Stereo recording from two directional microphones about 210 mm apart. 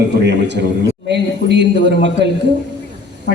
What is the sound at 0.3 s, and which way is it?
A man's voice, 55° right (ahead or behind).